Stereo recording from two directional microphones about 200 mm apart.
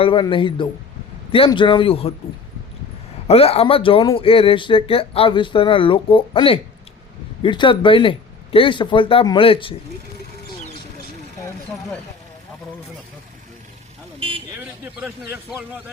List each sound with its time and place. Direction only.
0.0 s speech: 25° left (ahead or behind)
3.2 s speech: 30° left (ahead or behind)
14.2 s vehicle: 25° right (ahead or behind)
14.6 s a man's voice: 5° right (ahead or behind)